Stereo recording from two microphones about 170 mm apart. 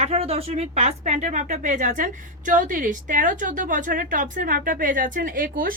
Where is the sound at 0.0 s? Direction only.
35° right (ahead or behind).